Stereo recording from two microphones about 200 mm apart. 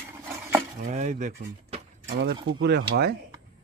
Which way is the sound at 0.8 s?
35° right (ahead or behind).